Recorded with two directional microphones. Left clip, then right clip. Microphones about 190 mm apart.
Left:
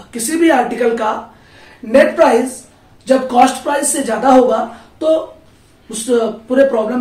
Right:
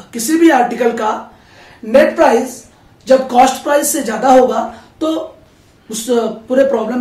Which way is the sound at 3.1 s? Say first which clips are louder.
Right 2 dB; 15° right (ahead or behind).